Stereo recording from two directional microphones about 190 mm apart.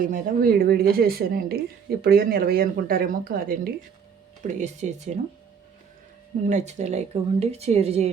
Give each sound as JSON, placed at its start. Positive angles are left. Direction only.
{"t": 0.0, "sound": "a woman's voice", "side_deg": -50}
{"t": 4.4, "sound": "a woman's voice", "side_deg": -40}
{"t": 6.5, "sound": "a woman's voice", "side_deg": -40}